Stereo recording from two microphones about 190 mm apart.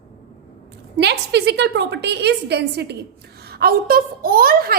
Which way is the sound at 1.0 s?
60° right (ahead or behind).